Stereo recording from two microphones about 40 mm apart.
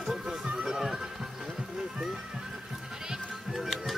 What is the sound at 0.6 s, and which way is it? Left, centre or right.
Music, centre.